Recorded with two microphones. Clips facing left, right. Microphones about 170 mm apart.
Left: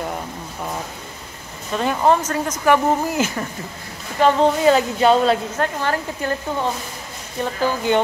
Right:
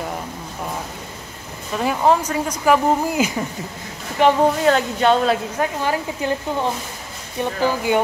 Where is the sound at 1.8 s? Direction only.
10° right (ahead or behind).